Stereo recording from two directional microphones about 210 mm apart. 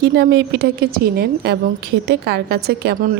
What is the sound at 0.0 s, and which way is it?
A woman's voice, 50° right (ahead or behind).